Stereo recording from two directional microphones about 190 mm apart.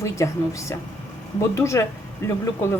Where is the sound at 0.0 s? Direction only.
15° left (ahead or behind).